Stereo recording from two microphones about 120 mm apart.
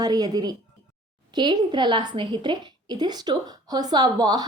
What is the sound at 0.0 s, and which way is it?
A woman's voice, 35° right (ahead or behind).